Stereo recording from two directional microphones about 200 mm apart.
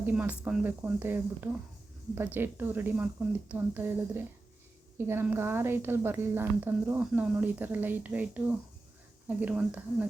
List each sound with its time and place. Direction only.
0.0 s a woman's voice: 5° right (ahead or behind)